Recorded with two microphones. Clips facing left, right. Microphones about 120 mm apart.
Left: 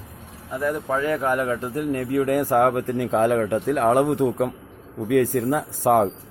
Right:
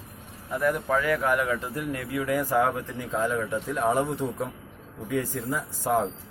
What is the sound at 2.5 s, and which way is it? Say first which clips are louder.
Speech: left 7 dB; 60° left (ahead or behind).